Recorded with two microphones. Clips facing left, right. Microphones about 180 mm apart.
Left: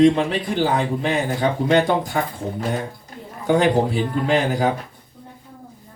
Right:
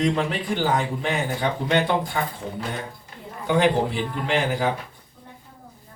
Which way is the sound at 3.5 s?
40° left (ahead or behind).